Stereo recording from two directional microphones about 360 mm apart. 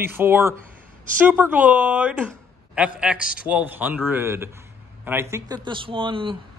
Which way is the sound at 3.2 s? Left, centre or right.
Left.